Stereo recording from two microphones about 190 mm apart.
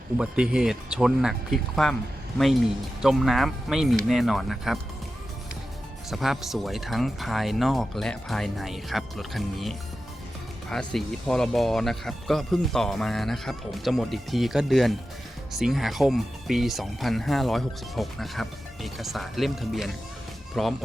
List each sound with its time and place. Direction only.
0.2 s speech: 5° right (ahead or behind)
3.0 s speech: centre (ahead or behind)
6.1 s speech: centre (ahead or behind)